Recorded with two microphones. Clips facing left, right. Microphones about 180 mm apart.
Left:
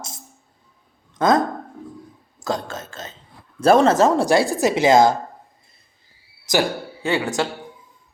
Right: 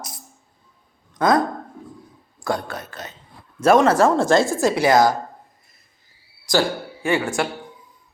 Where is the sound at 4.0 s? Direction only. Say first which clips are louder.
Even; 15° left (ahead or behind).